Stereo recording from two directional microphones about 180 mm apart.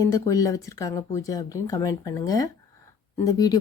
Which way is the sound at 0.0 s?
20° left (ahead or behind).